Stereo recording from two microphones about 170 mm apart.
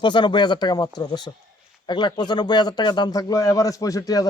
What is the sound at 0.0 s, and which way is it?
A man's voice, 25° left (ahead or behind).